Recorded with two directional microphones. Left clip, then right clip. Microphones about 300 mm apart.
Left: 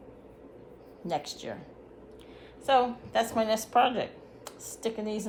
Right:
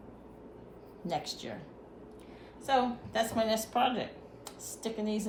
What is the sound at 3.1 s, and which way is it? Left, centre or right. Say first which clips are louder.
Speech: left 3 dB; centre.